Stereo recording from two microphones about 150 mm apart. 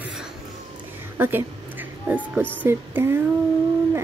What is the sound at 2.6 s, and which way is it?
Speech, 15° right (ahead or behind).